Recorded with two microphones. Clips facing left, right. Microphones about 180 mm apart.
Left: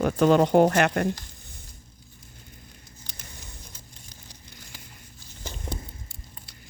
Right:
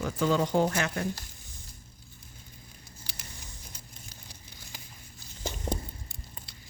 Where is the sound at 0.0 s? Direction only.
65° left (ahead or behind).